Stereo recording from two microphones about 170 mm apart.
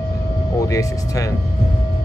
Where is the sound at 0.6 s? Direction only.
20° left (ahead or behind).